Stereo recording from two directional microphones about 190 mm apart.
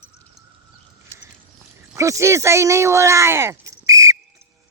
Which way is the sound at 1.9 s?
15° right (ahead or behind).